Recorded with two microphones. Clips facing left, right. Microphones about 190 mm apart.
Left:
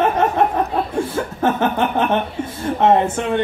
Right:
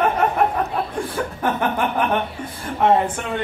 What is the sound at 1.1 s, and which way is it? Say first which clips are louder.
Speech: left 3 dB; 25° left (ahead or behind).